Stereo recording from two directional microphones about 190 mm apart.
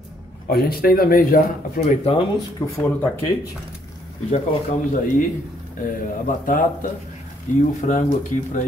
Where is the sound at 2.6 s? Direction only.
15° left (ahead or behind).